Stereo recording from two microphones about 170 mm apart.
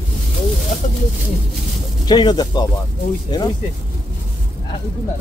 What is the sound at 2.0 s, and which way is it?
Speech, 25° left (ahead or behind).